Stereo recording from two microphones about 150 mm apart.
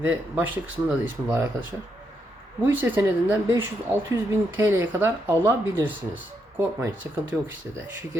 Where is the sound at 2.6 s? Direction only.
15° right (ahead or behind).